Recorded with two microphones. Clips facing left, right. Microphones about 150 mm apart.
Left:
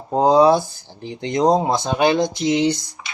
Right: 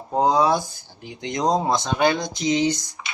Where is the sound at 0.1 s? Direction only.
25° left (ahead or behind).